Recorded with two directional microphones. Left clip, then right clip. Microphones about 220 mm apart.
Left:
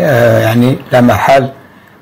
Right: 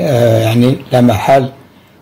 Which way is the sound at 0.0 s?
Centre (ahead or behind).